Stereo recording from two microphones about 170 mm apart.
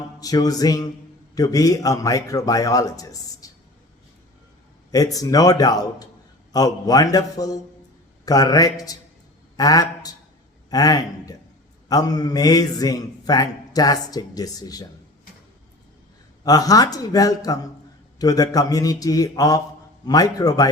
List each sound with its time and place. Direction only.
0.2 s a man's voice: 20° left (ahead or behind)
4.9 s a man's voice: 20° left (ahead or behind)
16.4 s a man's voice: 20° left (ahead or behind)